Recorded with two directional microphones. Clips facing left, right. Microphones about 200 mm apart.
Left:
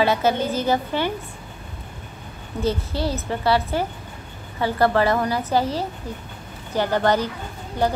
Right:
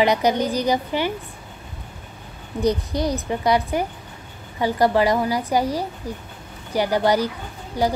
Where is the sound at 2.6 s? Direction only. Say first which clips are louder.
Right 3 dB; 15° right (ahead or behind).